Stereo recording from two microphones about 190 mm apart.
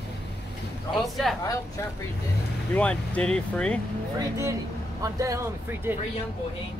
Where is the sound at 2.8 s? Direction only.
5° left (ahead or behind).